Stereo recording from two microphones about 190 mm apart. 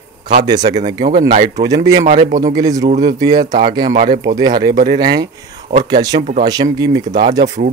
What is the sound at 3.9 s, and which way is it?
Speech, 40° right (ahead or behind).